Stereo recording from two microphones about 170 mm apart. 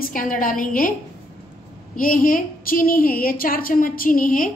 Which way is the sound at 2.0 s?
55° left (ahead or behind).